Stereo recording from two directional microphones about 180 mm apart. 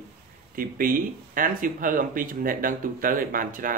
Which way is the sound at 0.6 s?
50° right (ahead or behind).